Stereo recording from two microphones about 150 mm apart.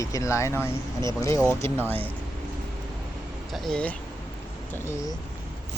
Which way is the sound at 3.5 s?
Centre (ahead or behind).